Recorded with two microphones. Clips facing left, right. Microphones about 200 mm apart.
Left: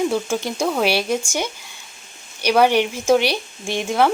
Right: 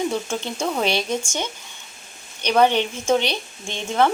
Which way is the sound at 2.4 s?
10° left (ahead or behind).